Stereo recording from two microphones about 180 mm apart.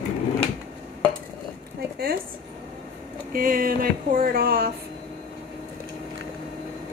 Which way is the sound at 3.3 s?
50° right (ahead or behind).